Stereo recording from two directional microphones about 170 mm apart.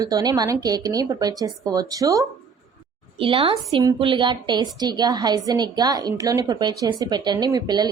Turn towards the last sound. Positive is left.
turn(degrees=-25)  # may be behind; listen again after turning